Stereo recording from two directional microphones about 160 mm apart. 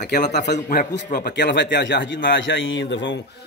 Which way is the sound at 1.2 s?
90° left.